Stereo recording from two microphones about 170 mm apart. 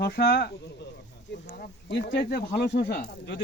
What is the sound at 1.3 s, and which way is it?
Speech, 60° left (ahead or behind).